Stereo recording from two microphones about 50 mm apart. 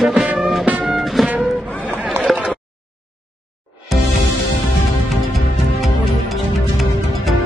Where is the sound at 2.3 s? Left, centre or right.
Centre.